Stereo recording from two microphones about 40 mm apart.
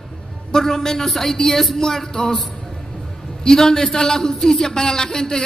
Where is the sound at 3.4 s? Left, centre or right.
Centre.